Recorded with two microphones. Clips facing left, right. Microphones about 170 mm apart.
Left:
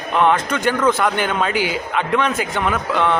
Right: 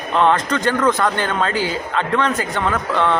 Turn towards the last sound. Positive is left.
turn(degrees=10)  # may be behind; listen again after turning